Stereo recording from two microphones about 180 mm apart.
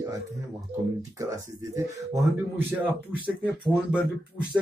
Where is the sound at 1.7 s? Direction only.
15° right (ahead or behind).